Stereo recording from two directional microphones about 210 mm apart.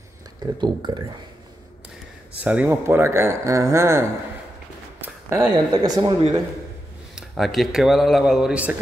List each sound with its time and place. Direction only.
0.4 s speech: 20° right (ahead or behind)
2.4 s speech: 5° right (ahead or behind)
5.0 s a sound: 10° right (ahead or behind)
5.7 s speech: 20° right (ahead or behind)
7.2 s speech: centre (ahead or behind)